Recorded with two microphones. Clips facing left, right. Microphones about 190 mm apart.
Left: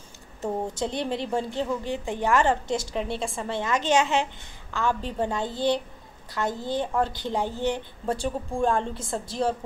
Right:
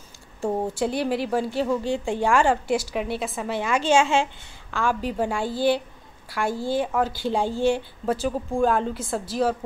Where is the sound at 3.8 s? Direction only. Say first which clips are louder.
Right 4 dB; 20° left (ahead or behind).